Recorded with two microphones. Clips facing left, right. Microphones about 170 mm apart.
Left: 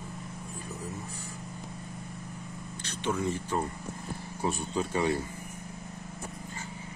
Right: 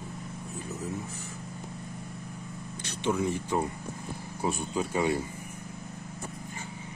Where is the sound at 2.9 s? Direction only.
15° right (ahead or behind).